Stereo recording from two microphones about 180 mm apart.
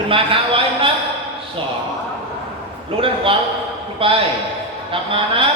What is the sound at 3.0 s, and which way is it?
A man's voice, 30° right (ahead or behind).